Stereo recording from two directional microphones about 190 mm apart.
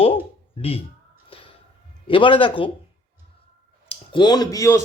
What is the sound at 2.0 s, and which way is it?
Speech, 25° left (ahead or behind).